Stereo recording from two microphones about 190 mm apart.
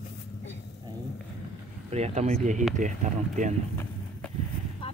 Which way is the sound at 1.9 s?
35° right (ahead or behind).